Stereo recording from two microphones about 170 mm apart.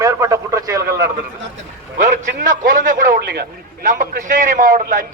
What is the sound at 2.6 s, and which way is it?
A man's voice, 50° right (ahead or behind).